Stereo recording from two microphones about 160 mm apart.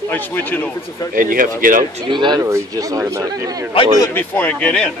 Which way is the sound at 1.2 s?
60° right (ahead or behind).